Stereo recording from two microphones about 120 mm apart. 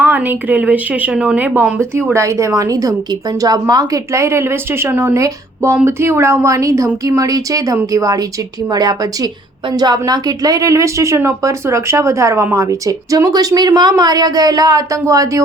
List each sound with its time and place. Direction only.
0.0 s a woman's voice: 15° right (ahead or behind)
2.1 s a woman's voice: 25° right (ahead or behind)